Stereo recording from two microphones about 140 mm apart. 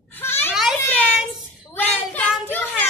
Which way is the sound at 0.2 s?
15° left (ahead or behind).